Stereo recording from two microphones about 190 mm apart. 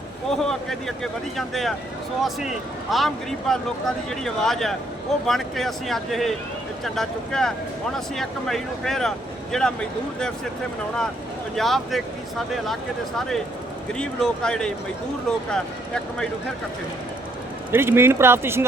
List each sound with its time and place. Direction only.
0.3 s speech: centre (ahead or behind)
11.5 s speech: centre (ahead or behind)
13.1 s speech: centre (ahead or behind)
17.7 s speech: 10° right (ahead or behind)